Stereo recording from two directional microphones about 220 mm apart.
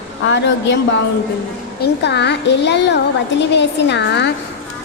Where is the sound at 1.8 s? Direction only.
50° left (ahead or behind).